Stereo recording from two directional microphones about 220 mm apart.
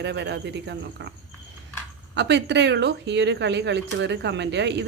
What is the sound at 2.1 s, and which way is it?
Speech, 50° right (ahead or behind).